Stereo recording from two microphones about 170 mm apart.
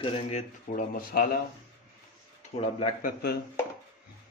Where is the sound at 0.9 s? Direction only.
55° left (ahead or behind).